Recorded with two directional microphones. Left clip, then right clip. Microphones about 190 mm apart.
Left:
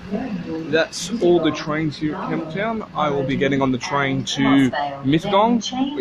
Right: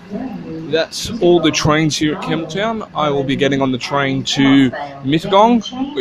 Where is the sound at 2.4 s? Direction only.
20° right (ahead or behind).